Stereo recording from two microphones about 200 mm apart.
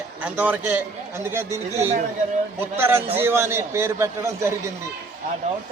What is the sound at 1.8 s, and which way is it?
Speech, 35° right (ahead or behind).